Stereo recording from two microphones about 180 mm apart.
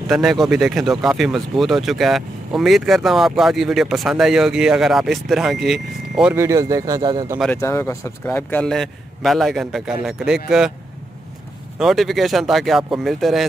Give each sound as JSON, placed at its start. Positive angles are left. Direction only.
{"t": 0.1, "sound": "speech", "side_deg": 0}
{"t": 6.3, "sound": "speech", "side_deg": -15}
{"t": 7.5, "sound": "speech", "side_deg": 15}
{"t": 11.8, "sound": "speech", "side_deg": 0}